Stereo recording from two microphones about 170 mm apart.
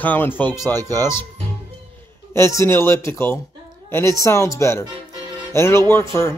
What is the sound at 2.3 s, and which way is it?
A woman's voice, 15° left (ahead or behind).